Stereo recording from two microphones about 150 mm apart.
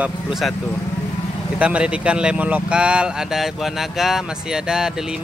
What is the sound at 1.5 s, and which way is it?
Speech, 10° right (ahead or behind).